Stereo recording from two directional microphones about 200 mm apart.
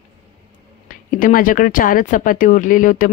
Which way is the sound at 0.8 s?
45° left (ahead or behind).